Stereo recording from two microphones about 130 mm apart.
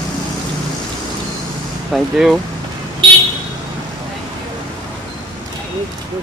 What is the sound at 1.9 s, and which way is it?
Speech, centre (ahead or behind).